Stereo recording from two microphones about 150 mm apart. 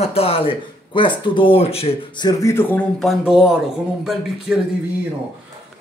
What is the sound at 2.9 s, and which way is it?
Speech, centre (ahead or behind).